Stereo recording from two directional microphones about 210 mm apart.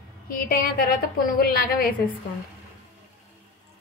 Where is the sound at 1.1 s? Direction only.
45° left (ahead or behind).